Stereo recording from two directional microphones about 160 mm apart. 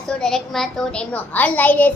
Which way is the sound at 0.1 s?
5° left (ahead or behind).